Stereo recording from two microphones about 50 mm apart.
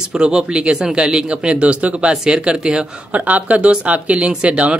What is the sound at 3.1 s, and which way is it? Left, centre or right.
Speech, right.